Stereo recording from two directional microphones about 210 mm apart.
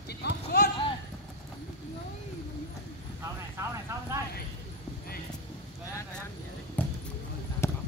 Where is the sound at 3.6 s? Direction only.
15° right (ahead or behind).